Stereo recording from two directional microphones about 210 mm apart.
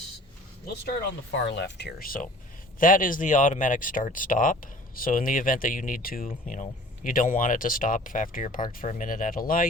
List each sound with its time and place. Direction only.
1.5 s speech: 55° left (ahead or behind)